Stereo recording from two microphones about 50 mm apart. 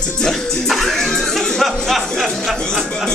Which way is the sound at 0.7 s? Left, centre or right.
Centre.